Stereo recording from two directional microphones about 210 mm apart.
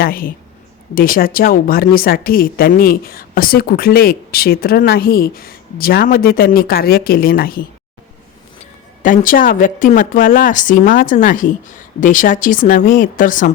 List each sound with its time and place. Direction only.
0.0 s a woman's voice: 45° left (ahead or behind)
9.0 s speech: 40° left (ahead or behind)